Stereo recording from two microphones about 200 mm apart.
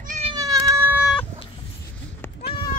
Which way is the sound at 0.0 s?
35° right (ahead or behind).